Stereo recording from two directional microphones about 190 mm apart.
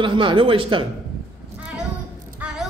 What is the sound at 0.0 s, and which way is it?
Speech, 25° right (ahead or behind).